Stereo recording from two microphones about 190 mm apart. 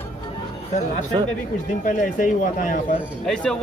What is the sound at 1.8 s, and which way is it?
Speech, 45° left (ahead or behind).